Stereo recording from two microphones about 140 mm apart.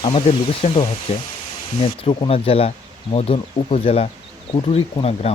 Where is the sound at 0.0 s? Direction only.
45° left (ahead or behind).